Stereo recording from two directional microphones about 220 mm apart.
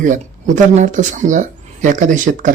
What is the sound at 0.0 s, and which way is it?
Speech, 35° right (ahead or behind).